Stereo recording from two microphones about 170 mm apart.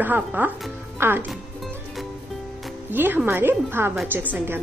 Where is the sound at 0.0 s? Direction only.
10° right (ahead or behind).